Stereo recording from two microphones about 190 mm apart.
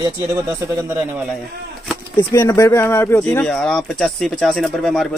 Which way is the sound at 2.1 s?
15° left (ahead or behind).